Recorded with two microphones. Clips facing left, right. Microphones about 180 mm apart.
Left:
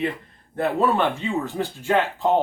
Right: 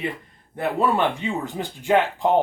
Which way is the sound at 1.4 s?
15° right (ahead or behind).